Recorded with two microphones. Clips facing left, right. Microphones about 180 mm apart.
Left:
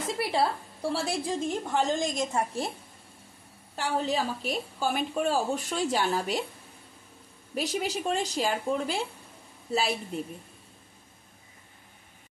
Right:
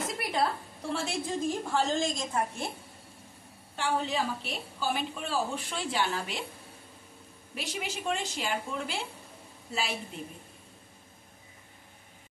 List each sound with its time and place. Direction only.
0.0 s a sound: 30° left (ahead or behind)
0.9 s a woman's voice: 35° left (ahead or behind)
1.4 s a woman's voice: 20° left (ahead or behind)
3.7 s a woman's voice: 40° left (ahead or behind)
7.5 s a woman's voice: 40° left (ahead or behind)